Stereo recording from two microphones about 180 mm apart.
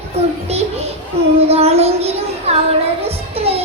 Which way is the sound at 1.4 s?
35° right (ahead or behind).